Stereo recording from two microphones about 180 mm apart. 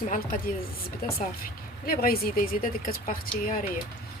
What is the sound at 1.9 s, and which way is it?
Speech, 55° left (ahead or behind).